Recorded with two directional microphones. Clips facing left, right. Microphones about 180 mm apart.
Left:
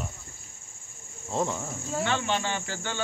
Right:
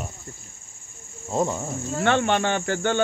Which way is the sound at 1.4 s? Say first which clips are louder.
Right 5 dB; 15° right (ahead or behind).